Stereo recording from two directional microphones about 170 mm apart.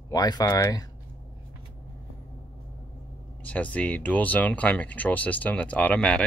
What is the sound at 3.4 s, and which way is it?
Speech, 10° left (ahead or behind).